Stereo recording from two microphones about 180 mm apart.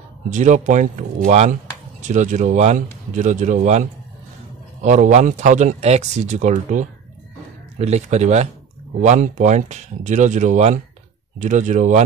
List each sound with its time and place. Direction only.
0.3 s speech: 40° right (ahead or behind)
4.8 s a man's voice: 40° right (ahead or behind)